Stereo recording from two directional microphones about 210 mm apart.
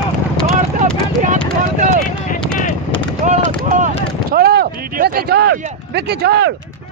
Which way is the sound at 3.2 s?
35° right (ahead or behind).